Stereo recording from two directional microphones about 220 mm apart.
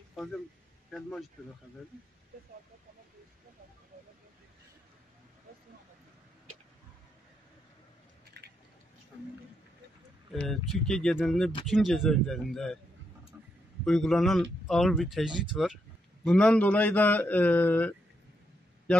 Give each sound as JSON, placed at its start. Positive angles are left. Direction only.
{"t": 0.1, "sound": "a sound", "side_deg": 0}
{"t": 0.8, "sound": "speech", "side_deg": 0}
{"t": 8.3, "sound": "squish", "side_deg": -50}
{"t": 10.3, "sound": "speech", "side_deg": 5}
{"t": 13.8, "sound": "a man's voice", "side_deg": 0}